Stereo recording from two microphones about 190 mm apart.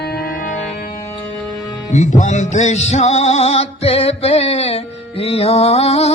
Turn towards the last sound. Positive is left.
turn(degrees=35)  # may be behind; listen again after turning